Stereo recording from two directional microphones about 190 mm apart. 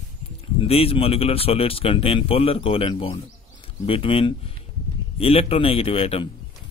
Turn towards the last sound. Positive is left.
turn(degrees=30)  # may be behind; listen again after turning